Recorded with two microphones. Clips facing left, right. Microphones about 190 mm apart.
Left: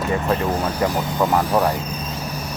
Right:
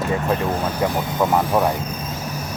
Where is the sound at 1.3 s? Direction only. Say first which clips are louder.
Even; 5° right (ahead or behind).